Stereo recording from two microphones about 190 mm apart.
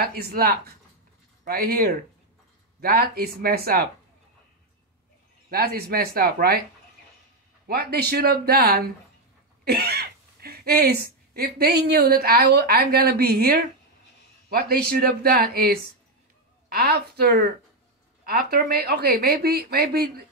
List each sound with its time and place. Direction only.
0.0 s speech: 55° right (ahead or behind)
5.5 s speech: 50° right (ahead or behind)
7.6 s a woman's voice: 55° right (ahead or behind)